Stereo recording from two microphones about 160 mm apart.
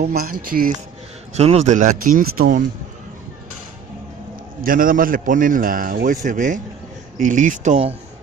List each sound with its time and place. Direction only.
0.0 s a man's voice: 70° right (ahead or behind)
1.3 s speech: 40° right (ahead or behind); by 2.6 s 60° right (ahead or behind)
4.6 s a man's voice: 60° right (ahead or behind)